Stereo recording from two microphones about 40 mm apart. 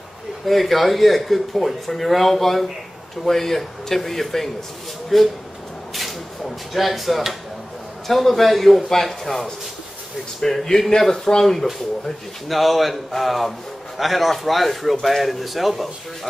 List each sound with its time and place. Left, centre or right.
0.5 s a man's voice: centre
5.9 s rub: centre
8.1 s a man's voice: centre
12.4 s a man's voice: centre